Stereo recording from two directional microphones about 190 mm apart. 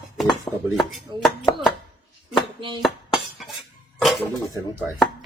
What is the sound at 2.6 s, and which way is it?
Dishes, 25° right (ahead or behind).